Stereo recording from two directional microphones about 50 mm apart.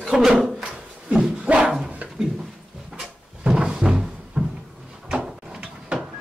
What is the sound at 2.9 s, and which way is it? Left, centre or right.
Cupboard open or close, centre.